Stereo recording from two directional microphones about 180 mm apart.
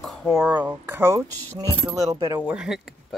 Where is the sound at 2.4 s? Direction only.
5° right (ahead or behind).